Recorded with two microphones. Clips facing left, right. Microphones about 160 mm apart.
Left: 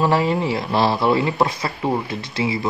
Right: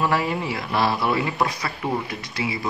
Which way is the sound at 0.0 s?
25° left (ahead or behind).